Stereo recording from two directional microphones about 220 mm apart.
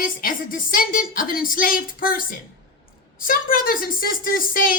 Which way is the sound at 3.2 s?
40° left (ahead or behind).